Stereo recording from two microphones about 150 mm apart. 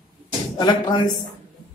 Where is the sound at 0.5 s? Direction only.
30° left (ahead or behind).